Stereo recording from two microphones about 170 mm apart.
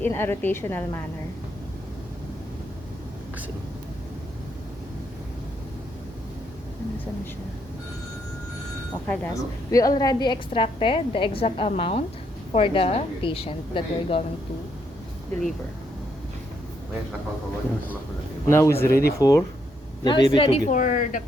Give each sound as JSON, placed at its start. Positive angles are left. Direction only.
{"t": 0.0, "sound": "a woman's voice", "side_deg": 15}
{"t": 9.0, "sound": "a woman's voice", "side_deg": 15}
{"t": 18.5, "sound": "a woman's voice", "side_deg": 15}
{"t": 18.9, "sound": "speech", "side_deg": 65}
{"t": 19.2, "sound": "speech", "side_deg": 20}
{"t": 20.7, "sound": "speech", "side_deg": 50}